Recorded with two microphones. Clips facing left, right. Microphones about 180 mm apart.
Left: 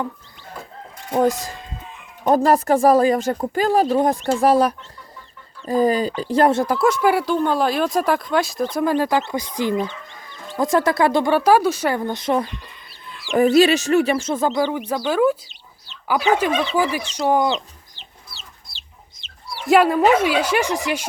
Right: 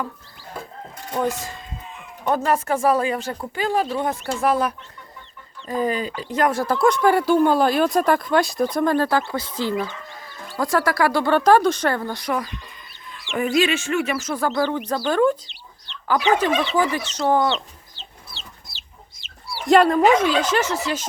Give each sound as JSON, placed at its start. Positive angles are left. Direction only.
{"t": 2.2, "sound": "speech", "side_deg": 35}
{"t": 6.7, "sound": "speech", "side_deg": 5}
{"t": 7.3, "sound": "speech", "side_deg": -5}
{"t": 11.3, "sound": "speech", "side_deg": 10}
{"t": 13.3, "sound": "speech", "side_deg": 35}
{"t": 17.9, "sound": "chicken", "side_deg": 10}
{"t": 18.7, "sound": "chicken", "side_deg": -10}
{"t": 19.6, "sound": "speech", "side_deg": 5}